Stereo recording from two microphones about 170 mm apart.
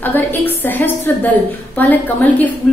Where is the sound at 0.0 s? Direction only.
10° left (ahead or behind).